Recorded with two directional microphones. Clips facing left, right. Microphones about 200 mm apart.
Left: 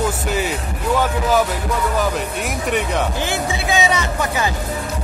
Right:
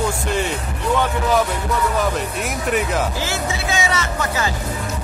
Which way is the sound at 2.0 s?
Centre (ahead or behind).